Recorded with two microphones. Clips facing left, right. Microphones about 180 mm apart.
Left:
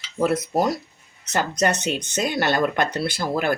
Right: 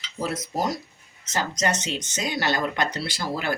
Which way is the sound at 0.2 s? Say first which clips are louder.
Left 7 dB; 60° left (ahead or behind).